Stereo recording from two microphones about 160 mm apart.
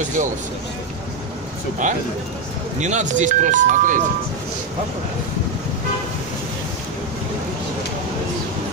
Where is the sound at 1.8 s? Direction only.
50° right (ahead or behind).